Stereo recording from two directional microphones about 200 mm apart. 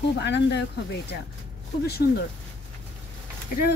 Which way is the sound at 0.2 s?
55° left (ahead or behind).